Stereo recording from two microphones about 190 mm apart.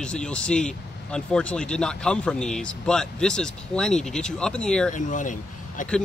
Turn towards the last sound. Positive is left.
turn(degrees=45)  # may be behind; listen again after turning